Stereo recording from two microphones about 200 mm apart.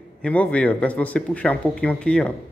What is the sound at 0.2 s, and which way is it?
A woman's voice, 5° left (ahead or behind).